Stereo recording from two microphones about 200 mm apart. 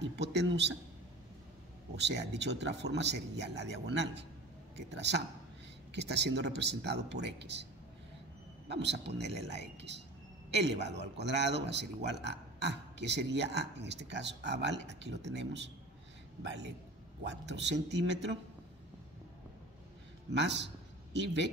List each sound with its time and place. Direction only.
0.0 s speech: 60° right (ahead or behind)
2.0 s speech: 60° right (ahead or behind)
8.6 s speech: 60° right (ahead or behind)
20.2 s a man's voice: 60° right (ahead or behind)